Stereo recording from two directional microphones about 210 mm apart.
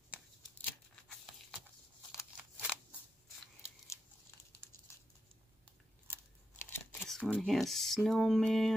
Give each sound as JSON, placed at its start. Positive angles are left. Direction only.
{"t": 0.6, "sound": "tearing", "side_deg": 5}
{"t": 2.1, "sound": "scissors", "side_deg": 0}
{"t": 6.6, "sound": "speech", "side_deg": 5}